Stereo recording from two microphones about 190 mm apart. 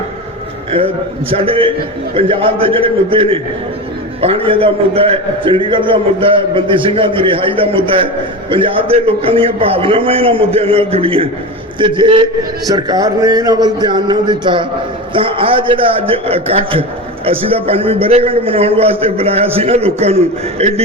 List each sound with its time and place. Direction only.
1.3 s a man's voice: 30° right (ahead or behind)